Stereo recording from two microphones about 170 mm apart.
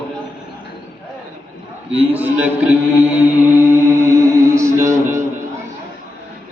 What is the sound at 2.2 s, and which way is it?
Mantra, 10° right (ahead or behind).